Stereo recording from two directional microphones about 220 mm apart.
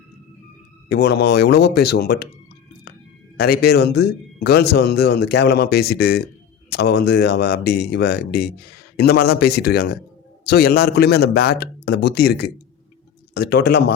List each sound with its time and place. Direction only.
0.9 s speech: 45° left (ahead or behind)
3.3 s speech: 45° left (ahead or behind)